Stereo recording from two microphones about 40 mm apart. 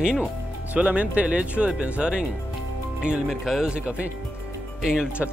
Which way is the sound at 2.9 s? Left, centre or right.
Centre.